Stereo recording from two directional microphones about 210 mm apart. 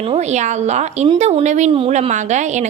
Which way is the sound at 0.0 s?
30° right (ahead or behind).